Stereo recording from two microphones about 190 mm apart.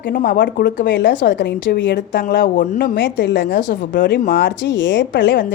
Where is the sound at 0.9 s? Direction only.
70° left (ahead or behind).